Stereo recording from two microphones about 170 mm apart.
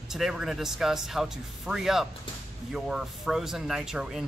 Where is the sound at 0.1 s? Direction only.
5° right (ahead or behind).